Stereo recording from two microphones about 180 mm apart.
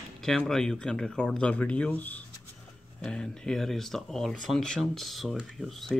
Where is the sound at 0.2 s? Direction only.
Centre (ahead or behind).